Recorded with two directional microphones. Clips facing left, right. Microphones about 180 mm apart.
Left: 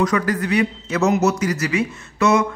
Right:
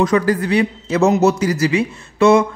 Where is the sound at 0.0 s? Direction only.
30° right (ahead or behind).